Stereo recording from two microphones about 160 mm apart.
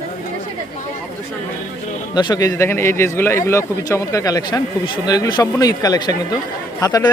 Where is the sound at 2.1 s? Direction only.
25° left (ahead or behind).